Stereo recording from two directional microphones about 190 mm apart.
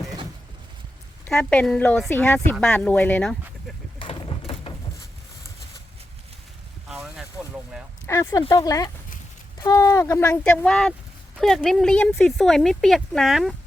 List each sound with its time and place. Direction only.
1.4 s a woman's voice: 10° left (ahead or behind)
3.9 s a sound: 30° left (ahead or behind)
6.8 s boat: centre (ahead or behind)
8.0 s a woman's voice: 15° left (ahead or behind); by 13.6 s centre (ahead or behind)